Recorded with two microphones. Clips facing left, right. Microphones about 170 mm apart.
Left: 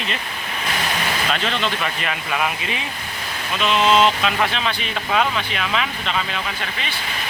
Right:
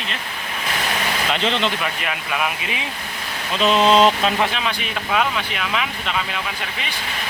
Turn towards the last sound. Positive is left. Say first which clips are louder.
# left 1 dB
turn(degrees=-5)  # may be behind; listen again after turning